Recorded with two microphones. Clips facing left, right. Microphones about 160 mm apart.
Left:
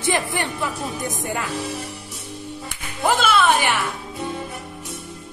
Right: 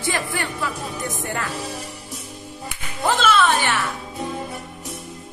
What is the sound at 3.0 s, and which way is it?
Speech, 10° left (ahead or behind).